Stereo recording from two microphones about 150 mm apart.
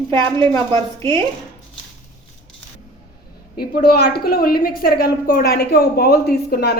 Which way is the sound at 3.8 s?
90° left.